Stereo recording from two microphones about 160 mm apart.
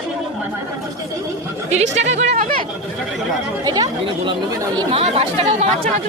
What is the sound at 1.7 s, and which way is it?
Speech, 45° right (ahead or behind).